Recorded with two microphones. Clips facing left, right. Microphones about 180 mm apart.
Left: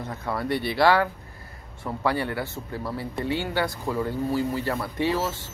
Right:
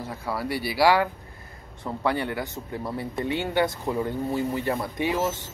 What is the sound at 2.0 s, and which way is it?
Speech, 20° right (ahead or behind).